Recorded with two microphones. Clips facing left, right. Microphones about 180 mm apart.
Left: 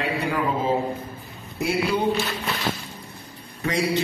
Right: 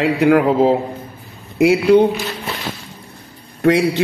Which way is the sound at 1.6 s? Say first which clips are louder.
Right 12 dB; 90° right.